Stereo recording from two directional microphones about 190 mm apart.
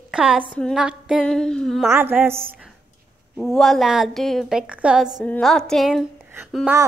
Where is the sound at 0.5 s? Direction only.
5° left (ahead or behind).